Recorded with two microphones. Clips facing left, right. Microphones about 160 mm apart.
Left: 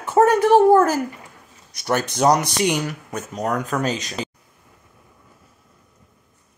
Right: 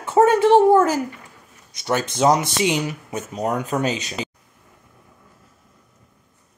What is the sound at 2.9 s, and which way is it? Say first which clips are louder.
Speech: right 1 dB; 5° right (ahead or behind).